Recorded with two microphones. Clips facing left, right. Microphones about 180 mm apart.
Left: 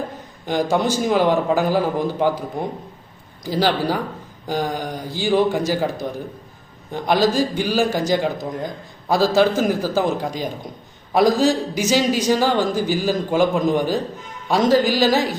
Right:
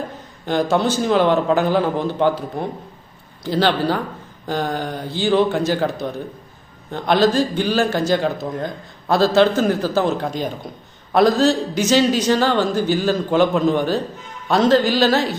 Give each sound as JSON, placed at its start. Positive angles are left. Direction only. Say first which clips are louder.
{"t": 0.4, "sound": "a man's voice", "louder": "right 1 dB", "side_deg": 10}